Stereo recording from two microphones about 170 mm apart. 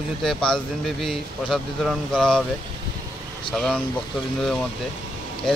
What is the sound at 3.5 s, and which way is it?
Speech, 5° left (ahead or behind).